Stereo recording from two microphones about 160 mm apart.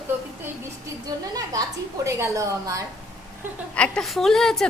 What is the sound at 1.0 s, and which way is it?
A woman's voice, 25° right (ahead or behind).